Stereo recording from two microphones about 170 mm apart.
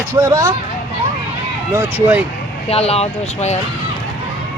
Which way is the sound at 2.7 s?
35° left (ahead or behind).